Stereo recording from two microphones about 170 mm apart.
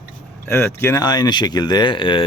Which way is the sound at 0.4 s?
15° left (ahead or behind).